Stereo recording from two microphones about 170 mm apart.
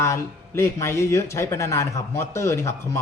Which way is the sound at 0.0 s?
15° left (ahead or behind).